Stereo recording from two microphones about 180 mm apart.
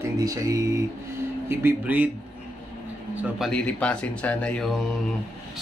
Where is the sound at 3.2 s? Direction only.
Centre (ahead or behind).